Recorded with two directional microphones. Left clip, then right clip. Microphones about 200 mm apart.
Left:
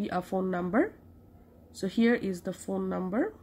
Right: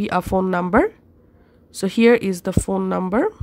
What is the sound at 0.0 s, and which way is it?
A woman's voice, 50° right (ahead or behind).